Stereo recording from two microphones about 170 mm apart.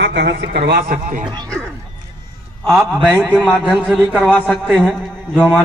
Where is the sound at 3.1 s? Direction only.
10° right (ahead or behind).